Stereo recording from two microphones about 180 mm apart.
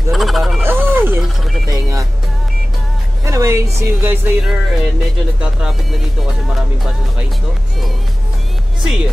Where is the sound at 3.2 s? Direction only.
15° right (ahead or behind).